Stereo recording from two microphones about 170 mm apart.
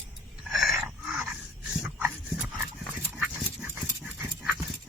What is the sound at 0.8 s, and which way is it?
Dog, centre (ahead or behind).